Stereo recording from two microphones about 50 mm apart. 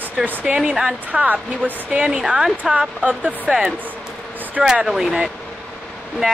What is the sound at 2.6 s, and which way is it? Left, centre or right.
Speech, right.